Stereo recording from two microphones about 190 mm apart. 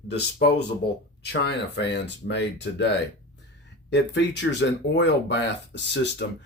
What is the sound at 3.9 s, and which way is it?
Speech, 65° left (ahead or behind).